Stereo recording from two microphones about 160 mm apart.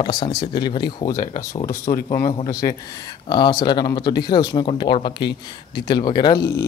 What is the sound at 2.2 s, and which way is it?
Speech, 25° left (ahead or behind).